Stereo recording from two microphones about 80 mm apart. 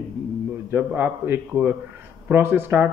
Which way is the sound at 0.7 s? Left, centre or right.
Right.